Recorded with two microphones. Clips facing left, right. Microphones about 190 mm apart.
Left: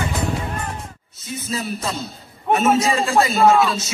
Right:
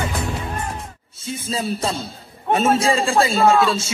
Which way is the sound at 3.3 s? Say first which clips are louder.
Left 2 dB; 10° left (ahead or behind).